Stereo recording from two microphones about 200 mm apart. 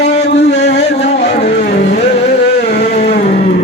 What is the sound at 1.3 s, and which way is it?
Mantra, 35° left (ahead or behind).